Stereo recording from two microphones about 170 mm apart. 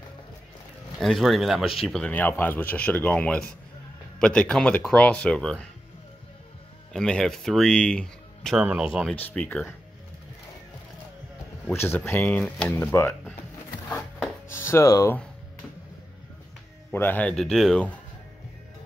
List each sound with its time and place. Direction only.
0.9 s speech: centre (ahead or behind)
6.9 s speech: 5° left (ahead or behind)
9.2 s speech: 5° left (ahead or behind)
11.7 s speech: 15° left (ahead or behind)
13.8 s a sound: 10° left (ahead or behind)
16.9 s speech: 10° left (ahead or behind)